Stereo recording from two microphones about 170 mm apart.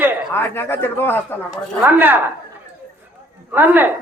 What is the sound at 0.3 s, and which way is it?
Speech, 15° left (ahead or behind).